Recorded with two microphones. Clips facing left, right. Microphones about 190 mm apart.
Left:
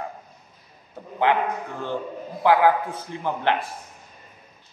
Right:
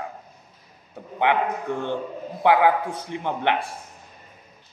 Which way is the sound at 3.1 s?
20° right (ahead or behind).